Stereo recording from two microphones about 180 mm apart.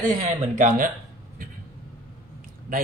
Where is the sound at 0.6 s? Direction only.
50° right (ahead or behind).